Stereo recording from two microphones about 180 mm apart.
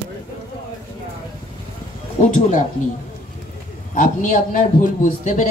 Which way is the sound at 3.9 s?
50° left (ahead or behind).